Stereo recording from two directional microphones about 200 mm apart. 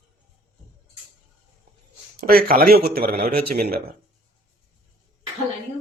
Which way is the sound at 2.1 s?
45° right (ahead or behind).